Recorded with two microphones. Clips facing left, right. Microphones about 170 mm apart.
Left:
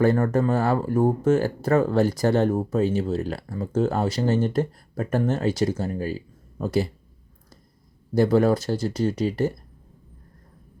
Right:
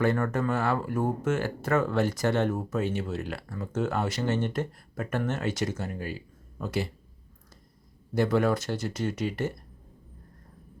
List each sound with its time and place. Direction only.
0.0 s speech: 35° left (ahead or behind)
8.1 s speech: 35° left (ahead or behind)